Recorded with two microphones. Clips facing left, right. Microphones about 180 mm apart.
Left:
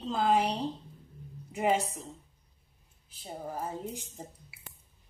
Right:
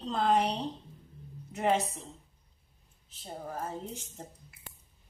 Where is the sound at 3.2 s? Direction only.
10° left (ahead or behind).